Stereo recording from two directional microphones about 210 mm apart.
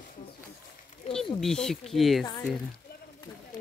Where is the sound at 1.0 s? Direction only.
35° left (ahead or behind).